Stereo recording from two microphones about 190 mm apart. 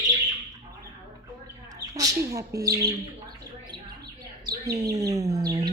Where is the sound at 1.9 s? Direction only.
15° right (ahead or behind).